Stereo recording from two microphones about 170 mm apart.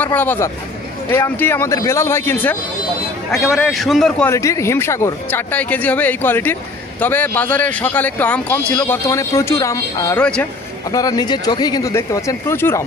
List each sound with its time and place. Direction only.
0.0 s speech: 10° left (ahead or behind)
3.3 s a man's voice: centre (ahead or behind)
4.3 s speech: 15° left (ahead or behind)
10.1 s a man's voice: 5° left (ahead or behind)
10.9 s speech: 20° left (ahead or behind)